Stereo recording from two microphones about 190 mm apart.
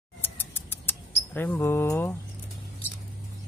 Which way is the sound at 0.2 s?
10° left (ahead or behind).